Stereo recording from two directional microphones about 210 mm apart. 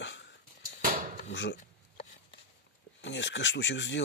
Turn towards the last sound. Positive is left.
turn(degrees=60)  # may be behind; listen again after turning